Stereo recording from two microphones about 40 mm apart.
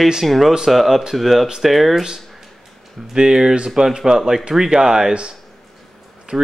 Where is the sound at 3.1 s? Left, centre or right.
Centre.